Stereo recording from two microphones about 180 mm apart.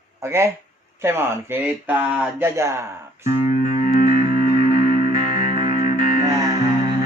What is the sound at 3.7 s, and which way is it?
Music, 45° left (ahead or behind).